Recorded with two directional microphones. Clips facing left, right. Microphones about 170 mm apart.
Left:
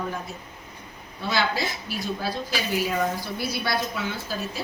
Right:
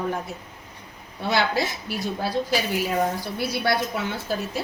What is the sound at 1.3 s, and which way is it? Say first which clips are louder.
Speech: right 3 dB; 60° right (ahead or behind).